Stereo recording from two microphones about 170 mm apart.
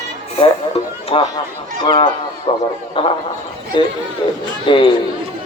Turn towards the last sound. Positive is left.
turn(degrees=30)  # may be behind; listen again after turning